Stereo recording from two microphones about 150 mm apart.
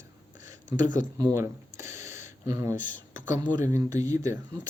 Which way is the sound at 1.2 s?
20° right (ahead or behind).